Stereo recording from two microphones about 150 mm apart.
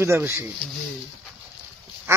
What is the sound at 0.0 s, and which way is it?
Speech, 15° right (ahead or behind).